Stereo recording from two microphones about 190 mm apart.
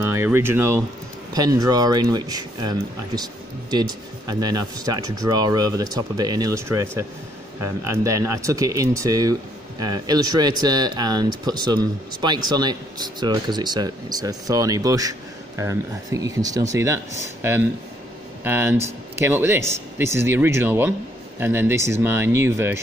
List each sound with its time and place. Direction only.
0.0 s speech: 15° right (ahead or behind)